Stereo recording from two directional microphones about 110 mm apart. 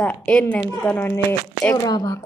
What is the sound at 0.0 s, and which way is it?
Speech, 10° left (ahead or behind).